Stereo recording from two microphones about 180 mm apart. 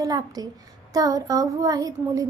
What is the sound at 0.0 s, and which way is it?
A woman's voice, 20° right (ahead or behind).